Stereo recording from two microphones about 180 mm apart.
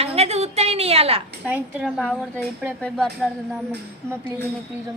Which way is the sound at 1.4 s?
5° right (ahead or behind).